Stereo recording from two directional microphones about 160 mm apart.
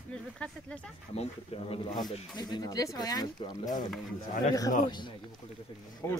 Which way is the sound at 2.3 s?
25° left (ahead or behind).